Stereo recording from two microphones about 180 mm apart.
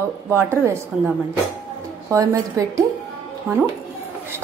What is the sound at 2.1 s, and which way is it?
Speech, 20° right (ahead or behind).